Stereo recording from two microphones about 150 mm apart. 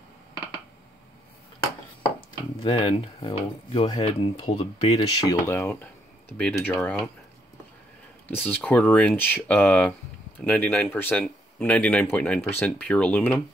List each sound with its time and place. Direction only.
2.1 s speech: 40° left (ahead or behind)
5.3 s speech: 15° left (ahead or behind)
8.5 s speech: 10° left (ahead or behind)